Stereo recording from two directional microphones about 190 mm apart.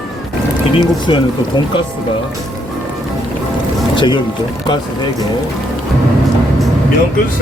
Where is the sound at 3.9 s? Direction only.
25° left (ahead or behind).